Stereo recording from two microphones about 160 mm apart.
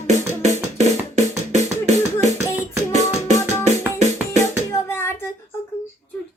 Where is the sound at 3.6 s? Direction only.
45° right (ahead or behind).